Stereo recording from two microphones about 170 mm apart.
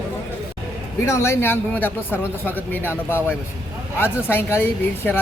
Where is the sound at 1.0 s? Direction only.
15° left (ahead or behind).